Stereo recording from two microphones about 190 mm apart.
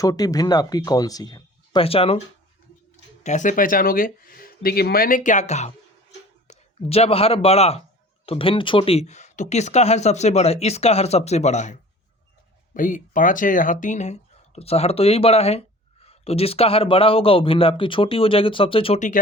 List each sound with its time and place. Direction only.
0.0 s speech: 20° left (ahead or behind); by 19.2 s 40° left (ahead or behind)